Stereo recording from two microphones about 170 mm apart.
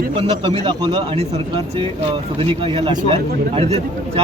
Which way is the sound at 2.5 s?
30° right (ahead or behind).